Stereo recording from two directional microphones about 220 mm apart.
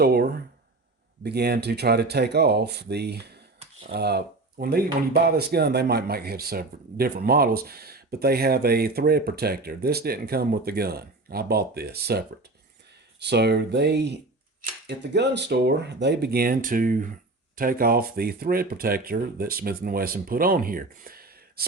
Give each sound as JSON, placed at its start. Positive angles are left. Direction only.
{"t": 0.0, "sound": "speech", "side_deg": -45}